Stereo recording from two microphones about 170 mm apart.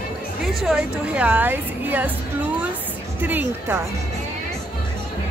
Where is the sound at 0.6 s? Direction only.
5° right (ahead or behind).